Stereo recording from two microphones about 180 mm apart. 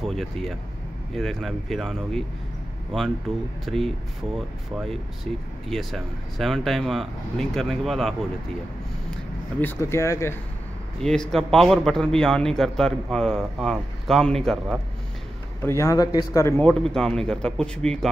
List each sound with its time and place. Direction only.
0.0 s speech: centre (ahead or behind)
3.6 s speech: centre (ahead or behind)
9.6 s a man's voice: 10° left (ahead or behind)
11.0 s speech: 5° left (ahead or behind)
15.6 s a man's voice: 15° left (ahead or behind)